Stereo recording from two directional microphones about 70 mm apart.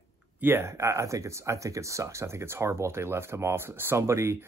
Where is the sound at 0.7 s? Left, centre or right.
Right.